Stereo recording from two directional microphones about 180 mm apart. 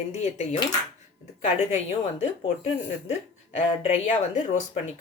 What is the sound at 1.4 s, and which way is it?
Speech, 40° left (ahead or behind).